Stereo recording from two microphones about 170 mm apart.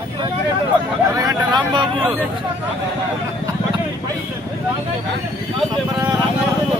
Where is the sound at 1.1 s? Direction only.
25° right (ahead or behind).